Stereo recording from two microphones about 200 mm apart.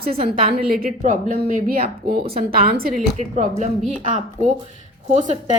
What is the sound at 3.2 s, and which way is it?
A woman's voice, 35° right (ahead or behind).